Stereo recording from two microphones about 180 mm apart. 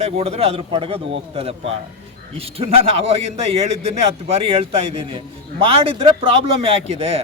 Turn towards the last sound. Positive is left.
turn(degrees=-35)  # may be behind; listen again after turning